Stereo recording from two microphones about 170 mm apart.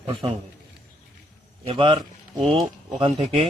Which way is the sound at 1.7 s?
30° right (ahead or behind).